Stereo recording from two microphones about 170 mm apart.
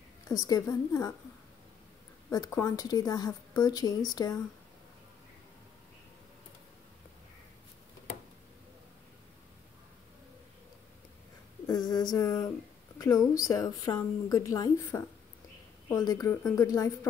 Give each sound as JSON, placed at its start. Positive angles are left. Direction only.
{"t": 0.3, "sound": "a woman's voice", "side_deg": 20}
{"t": 2.2, "sound": "a woman's voice", "side_deg": 20}
{"t": 11.6, "sound": "a woman's voice", "side_deg": 20}